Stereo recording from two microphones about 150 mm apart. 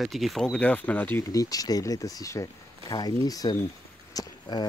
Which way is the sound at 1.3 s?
25° left (ahead or behind).